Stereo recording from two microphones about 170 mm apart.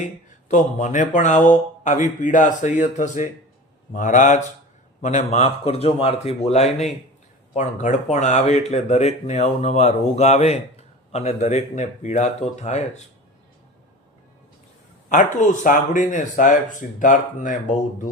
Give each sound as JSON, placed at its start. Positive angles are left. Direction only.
{"t": 0.4, "sound": "speech", "side_deg": 45}
{"t": 15.1, "sound": "speech", "side_deg": 50}